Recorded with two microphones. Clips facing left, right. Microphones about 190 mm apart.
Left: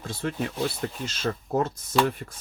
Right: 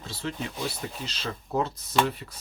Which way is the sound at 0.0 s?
50° left (ahead or behind).